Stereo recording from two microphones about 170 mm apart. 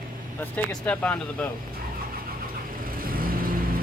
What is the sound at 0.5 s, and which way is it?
Speech, 5° left (ahead or behind).